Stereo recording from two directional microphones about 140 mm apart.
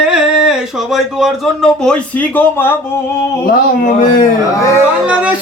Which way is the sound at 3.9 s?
70° left (ahead or behind).